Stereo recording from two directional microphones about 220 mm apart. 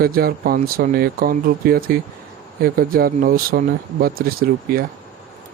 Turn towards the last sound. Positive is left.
turn(degrees=-40)  # may be behind; listen again after turning